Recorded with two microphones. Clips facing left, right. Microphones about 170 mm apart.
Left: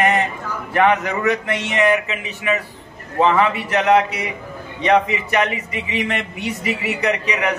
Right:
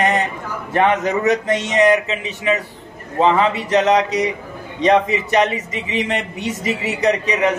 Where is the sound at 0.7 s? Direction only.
20° right (ahead or behind).